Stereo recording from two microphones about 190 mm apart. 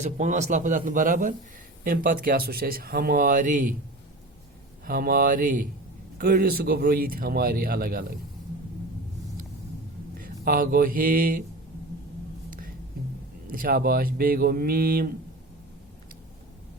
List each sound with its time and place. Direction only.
0.0 s speech: 40° right (ahead or behind)
4.9 s speech: 50° right (ahead or behind)
10.2 s speech: 50° right (ahead or behind)
12.5 s music: 45° right (ahead or behind)
13.5 s speech: 50° right (ahead or behind)